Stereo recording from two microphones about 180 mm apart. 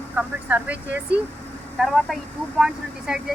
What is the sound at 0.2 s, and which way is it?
Speech, 10° right (ahead or behind).